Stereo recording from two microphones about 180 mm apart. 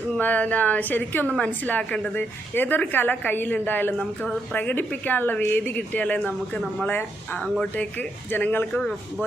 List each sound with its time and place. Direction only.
0.2 s a woman's voice: 10° left (ahead or behind)
7.8 s a woman's voice: 10° left (ahead or behind)